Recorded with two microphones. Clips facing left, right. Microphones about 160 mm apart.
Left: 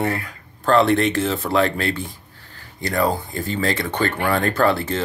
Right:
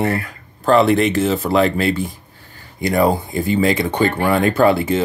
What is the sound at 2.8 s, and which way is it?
Speech, 15° right (ahead or behind).